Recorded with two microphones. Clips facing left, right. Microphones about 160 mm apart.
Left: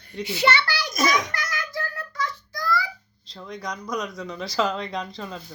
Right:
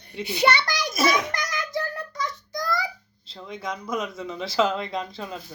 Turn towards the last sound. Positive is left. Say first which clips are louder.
# right 1 dB
turn(degrees=-5)  # may be behind; listen again after turning